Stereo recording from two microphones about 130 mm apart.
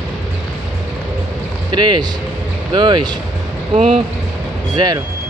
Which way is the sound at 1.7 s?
35° right (ahead or behind).